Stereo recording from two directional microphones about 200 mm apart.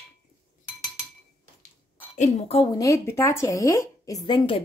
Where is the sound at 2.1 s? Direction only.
35° left (ahead or behind).